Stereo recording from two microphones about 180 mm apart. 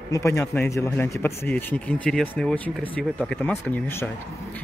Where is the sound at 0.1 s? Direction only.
15° left (ahead or behind).